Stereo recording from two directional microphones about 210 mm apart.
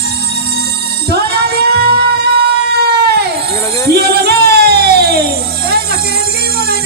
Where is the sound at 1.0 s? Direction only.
50° right (ahead or behind).